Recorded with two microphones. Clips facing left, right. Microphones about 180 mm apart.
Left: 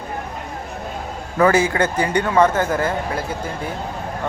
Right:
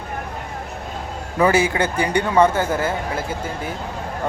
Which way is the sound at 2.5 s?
25° right (ahead or behind).